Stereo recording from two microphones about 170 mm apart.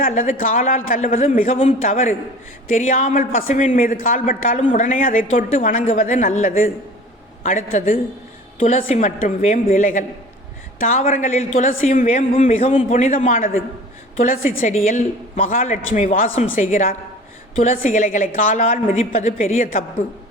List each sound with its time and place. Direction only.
0.0 s a woman's voice: 50° left (ahead or behind)
1.5 s a man's voice: 35° left (ahead or behind)
1.9 s a woman's voice: 50° left (ahead or behind)
11.1 s a woman's voice: 45° left (ahead or behind)